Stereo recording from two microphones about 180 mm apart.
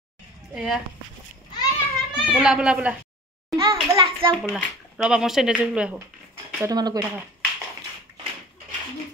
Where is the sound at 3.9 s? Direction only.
30° right (ahead or behind).